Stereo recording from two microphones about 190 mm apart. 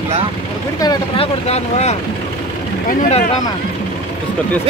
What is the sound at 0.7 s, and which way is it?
Speech, 25° left (ahead or behind).